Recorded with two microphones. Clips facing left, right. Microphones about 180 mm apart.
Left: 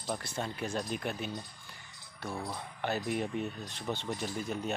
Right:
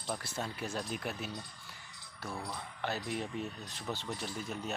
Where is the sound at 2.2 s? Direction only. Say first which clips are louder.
Left 3 dB; 15° left (ahead or behind).